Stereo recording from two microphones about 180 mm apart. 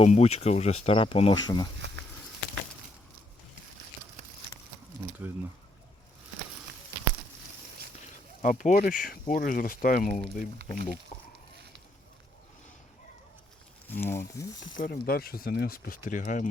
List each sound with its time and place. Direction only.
0.0 s speech: 35° left (ahead or behind)
1.8 s a sound: 80° right
5.2 s a sound: 10° right (ahead or behind)
8.4 s speech: 45° left (ahead or behind)
13.8 s speech: 10° left (ahead or behind)
14.7 s speech: 50° left (ahead or behind)
16.0 s speech: 45° left (ahead or behind)